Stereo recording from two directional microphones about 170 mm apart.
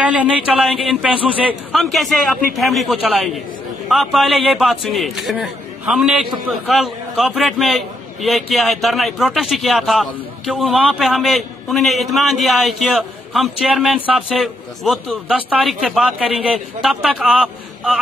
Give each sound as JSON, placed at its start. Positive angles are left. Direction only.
{"t": 0.0, "sound": "a man's voice", "side_deg": -10}